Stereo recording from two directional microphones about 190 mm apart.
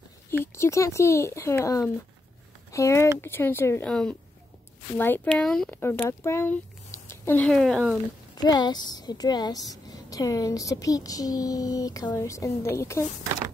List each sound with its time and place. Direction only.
0.3 s speech: 15° left (ahead or behind)
8.4 s a woman's voice: 20° left (ahead or behind)